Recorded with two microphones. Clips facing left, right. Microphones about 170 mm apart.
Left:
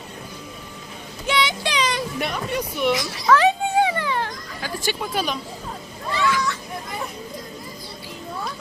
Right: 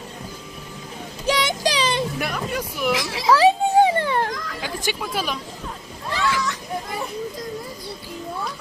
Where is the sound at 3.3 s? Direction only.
35° right (ahead or behind).